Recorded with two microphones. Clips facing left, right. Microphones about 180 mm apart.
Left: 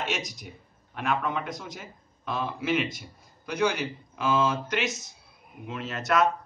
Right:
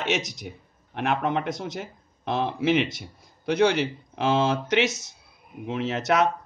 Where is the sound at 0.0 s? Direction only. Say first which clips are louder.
Right 5 dB; 70° right (ahead or behind).